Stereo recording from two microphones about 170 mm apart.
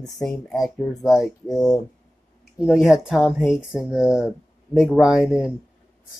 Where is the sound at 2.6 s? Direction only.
5° right (ahead or behind).